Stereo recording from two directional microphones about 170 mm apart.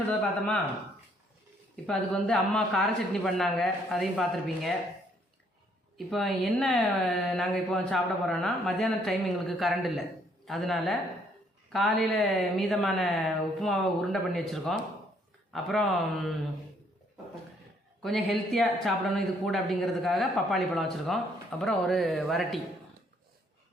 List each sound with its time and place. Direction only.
0.1 s speech: 5° left (ahead or behind)
1.7 s speech: 5° left (ahead or behind)
6.1 s speech: centre (ahead or behind)
18.0 s speech: centre (ahead or behind)